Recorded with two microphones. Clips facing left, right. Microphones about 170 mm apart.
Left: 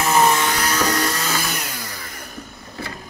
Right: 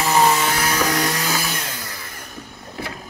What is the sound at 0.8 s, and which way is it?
Music, 20° right (ahead or behind).